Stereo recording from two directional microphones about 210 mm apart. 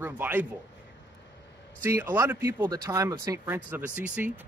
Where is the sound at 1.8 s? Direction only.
10° right (ahead or behind).